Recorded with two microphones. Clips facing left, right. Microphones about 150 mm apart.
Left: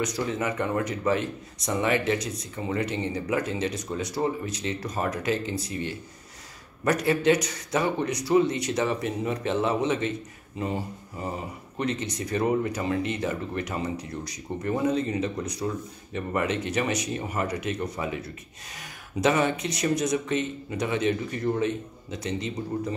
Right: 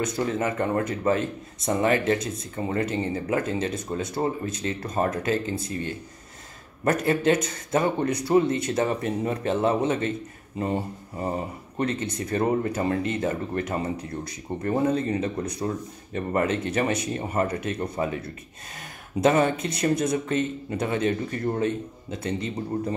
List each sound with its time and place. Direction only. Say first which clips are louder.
0.0 s speech: right 2 dB; 50° right (ahead or behind)
4.8 s speech: right 5 dB; 25° right (ahead or behind)
5.1 s speech: right 2 dB; 50° right (ahead or behind)
6.8 s speech: right 1 dB; 45° right (ahead or behind)
10.7 s speech: right 3 dB; 25° right (ahead or behind)
11.8 s speech: right 2 dB; 55° right (ahead or behind)
15.6 s speech: right 1 dB; 40° right (ahead or behind)
17.7 s speech: right 3 dB; 25° right (ahead or behind)
18.0 s speech: right 3 dB; 45° right (ahead or behind)